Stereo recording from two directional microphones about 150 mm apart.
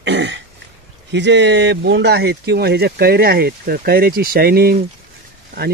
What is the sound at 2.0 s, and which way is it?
Speech, 90° right.